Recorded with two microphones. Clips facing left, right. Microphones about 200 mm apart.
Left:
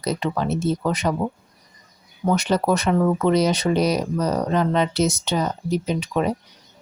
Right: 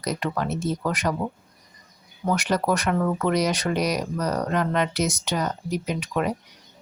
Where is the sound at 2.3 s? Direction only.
25° left (ahead or behind).